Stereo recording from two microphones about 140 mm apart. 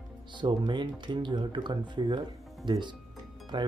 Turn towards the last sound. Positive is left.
turn(degrees=-35)  # may be behind; listen again after turning